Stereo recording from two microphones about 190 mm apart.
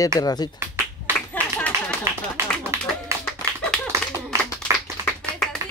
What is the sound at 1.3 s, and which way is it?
Clapping, 5° left (ahead or behind).